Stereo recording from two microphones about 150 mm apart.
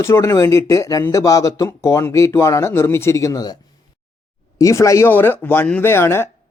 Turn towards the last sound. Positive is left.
turn(degrees=15)  # may be behind; listen again after turning